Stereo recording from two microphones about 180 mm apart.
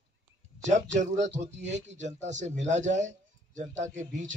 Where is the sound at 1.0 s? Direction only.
40° right (ahead or behind).